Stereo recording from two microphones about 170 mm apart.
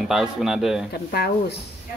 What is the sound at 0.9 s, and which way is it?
Speech, 70° left (ahead or behind).